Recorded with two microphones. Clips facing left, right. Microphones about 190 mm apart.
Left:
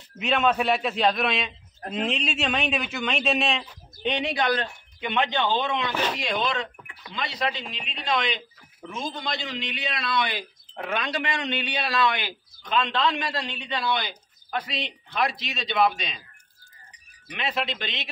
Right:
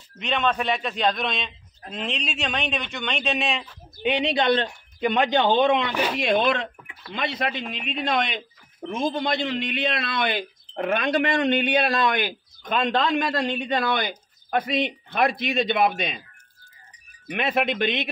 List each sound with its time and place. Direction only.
0.2 s a man's voice: 5° left (ahead or behind)
4.2 s speech: 25° right (ahead or behind)
5.0 s a man's voice: 40° right (ahead or behind)
17.3 s a man's voice: 55° right (ahead or behind)